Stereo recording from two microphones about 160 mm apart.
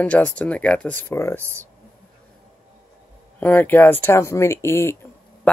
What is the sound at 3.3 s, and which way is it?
Speech, 10° left (ahead or behind).